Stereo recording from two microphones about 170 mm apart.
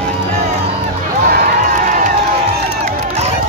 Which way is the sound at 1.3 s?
55° right (ahead or behind).